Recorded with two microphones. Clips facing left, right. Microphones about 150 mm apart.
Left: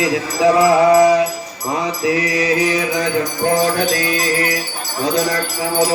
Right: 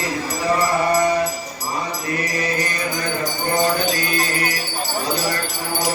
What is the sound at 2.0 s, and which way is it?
Mantra, 90° left.